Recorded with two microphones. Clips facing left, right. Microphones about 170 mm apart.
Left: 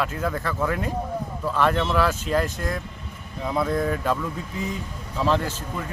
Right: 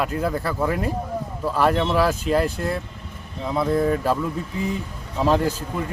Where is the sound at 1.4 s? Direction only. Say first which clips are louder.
Right 2 dB; 10° right (ahead or behind).